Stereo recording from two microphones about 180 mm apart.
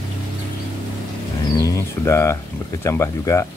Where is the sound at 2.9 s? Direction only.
15° left (ahead or behind).